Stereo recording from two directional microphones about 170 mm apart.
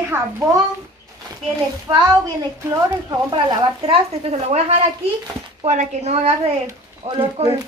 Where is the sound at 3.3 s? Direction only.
30° right (ahead or behind).